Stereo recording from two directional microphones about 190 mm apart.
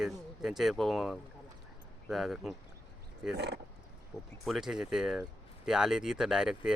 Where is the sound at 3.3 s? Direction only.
60° right (ahead or behind).